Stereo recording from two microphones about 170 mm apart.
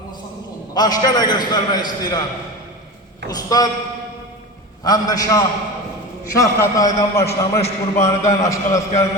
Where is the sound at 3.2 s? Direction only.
20° left (ahead or behind).